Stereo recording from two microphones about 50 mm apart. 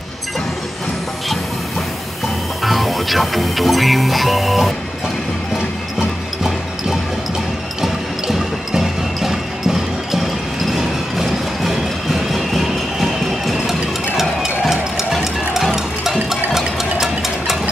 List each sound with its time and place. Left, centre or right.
2.6 s speech: centre
7.8 s music: centre
10.7 s a sound: centre